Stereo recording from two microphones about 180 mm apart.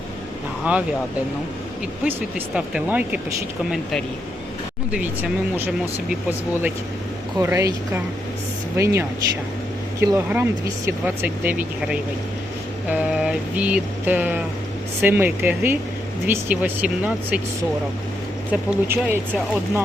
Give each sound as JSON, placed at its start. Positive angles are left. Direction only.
{"t": 0.6, "sound": "speech", "side_deg": -5}
{"t": 2.6, "sound": "speech", "side_deg": -5}
{"t": 6.5, "sound": "speech", "side_deg": -10}
{"t": 12.9, "sound": "a sound", "side_deg": -10}
{"t": 15.0, "sound": "speech", "side_deg": -10}
{"t": 18.5, "sound": "speech", "side_deg": -10}